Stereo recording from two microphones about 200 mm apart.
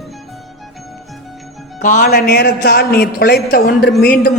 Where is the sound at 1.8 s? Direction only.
45° left (ahead or behind).